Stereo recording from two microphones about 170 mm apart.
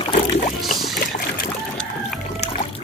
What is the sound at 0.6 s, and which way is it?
Music, centre (ahead or behind).